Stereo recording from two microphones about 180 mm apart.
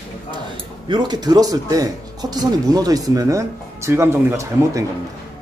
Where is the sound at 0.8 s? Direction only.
25° right (ahead or behind).